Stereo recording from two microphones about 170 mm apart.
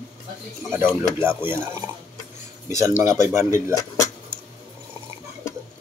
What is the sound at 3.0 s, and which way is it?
Speech, 15° right (ahead or behind).